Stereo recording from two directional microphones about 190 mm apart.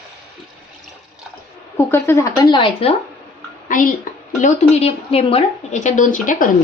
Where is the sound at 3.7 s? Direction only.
45° left (ahead or behind).